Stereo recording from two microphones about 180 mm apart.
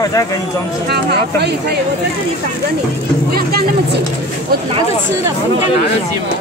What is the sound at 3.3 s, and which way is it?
Speech, 60° right (ahead or behind).